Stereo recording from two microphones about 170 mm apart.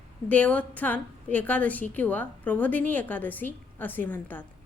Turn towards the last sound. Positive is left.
turn(degrees=10)  # may be behind; listen again after turning